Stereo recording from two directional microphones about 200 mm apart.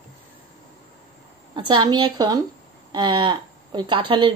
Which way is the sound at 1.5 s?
25° right (ahead or behind).